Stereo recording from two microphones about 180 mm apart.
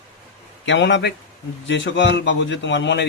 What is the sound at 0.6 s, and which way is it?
Speech, 90° left.